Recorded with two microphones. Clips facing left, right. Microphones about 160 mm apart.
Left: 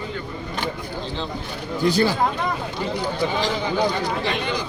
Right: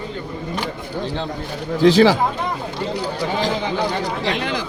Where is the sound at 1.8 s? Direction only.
90° right.